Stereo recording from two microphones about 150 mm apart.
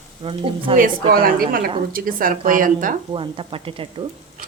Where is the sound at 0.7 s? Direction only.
70° right (ahead or behind).